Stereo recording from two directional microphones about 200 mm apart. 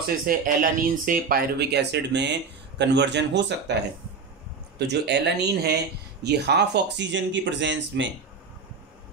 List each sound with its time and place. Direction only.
0.3 s speech: 45° right (ahead or behind); by 8.1 s 65° right (ahead or behind)